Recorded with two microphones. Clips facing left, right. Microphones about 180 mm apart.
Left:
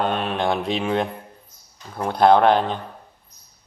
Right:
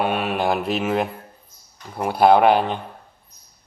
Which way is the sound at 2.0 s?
10° right (ahead or behind).